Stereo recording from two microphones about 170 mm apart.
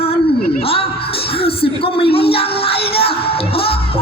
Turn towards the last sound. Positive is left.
turn(degrees=35)  # may be behind; listen again after turning